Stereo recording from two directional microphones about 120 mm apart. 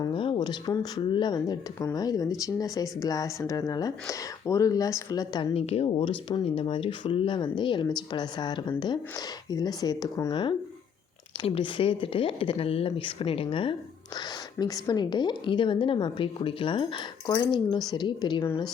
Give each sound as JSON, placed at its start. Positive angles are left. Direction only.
{"t": 0.1, "sound": "a woman's voice", "side_deg": 45}
{"t": 5.5, "sound": "a woman's voice", "side_deg": 60}
{"t": 11.4, "sound": "speech", "side_deg": 50}
{"t": 14.6, "sound": "a woman's voice", "side_deg": 35}